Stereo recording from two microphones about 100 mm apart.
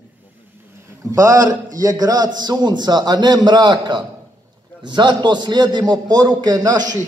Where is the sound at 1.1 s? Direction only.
35° right (ahead or behind).